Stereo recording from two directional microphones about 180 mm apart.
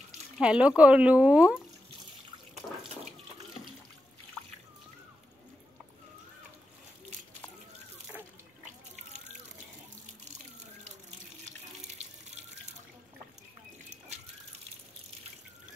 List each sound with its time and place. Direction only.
0.4 s speech: 5° right (ahead or behind)
11.8 s water tap: 40° right (ahead or behind)